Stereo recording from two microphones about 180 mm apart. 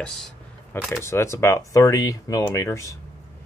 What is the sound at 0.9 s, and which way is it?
Speech, 15° left (ahead or behind).